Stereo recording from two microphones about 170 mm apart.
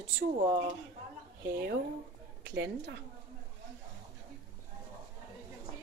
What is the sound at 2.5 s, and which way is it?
Speech, 90° right.